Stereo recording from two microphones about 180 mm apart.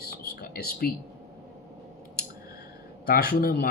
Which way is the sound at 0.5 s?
55° left (ahead or behind).